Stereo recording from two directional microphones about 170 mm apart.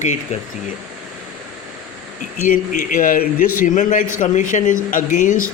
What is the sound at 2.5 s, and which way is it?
A man's voice, 55° left (ahead or behind).